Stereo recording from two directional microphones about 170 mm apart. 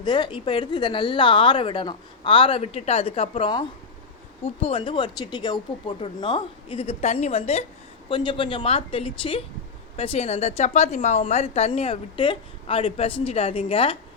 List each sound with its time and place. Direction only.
0.0 s a woman's voice: 25° left (ahead or behind)